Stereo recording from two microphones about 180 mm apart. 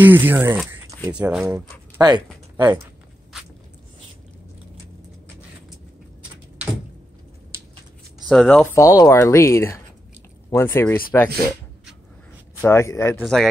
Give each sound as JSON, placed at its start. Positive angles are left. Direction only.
{"t": 0.0, "sound": "speech", "side_deg": -10}
{"t": 0.7, "sound": "a sound", "side_deg": -15}
{"t": 1.1, "sound": "speech", "side_deg": -5}
{"t": 1.4, "sound": "speech", "side_deg": -20}
{"t": 8.3, "sound": "speech", "side_deg": 5}
{"t": 8.8, "sound": "speech", "side_deg": 20}
{"t": 12.6, "sound": "speech", "side_deg": 15}
{"t": 13.2, "sound": "speech", "side_deg": 0}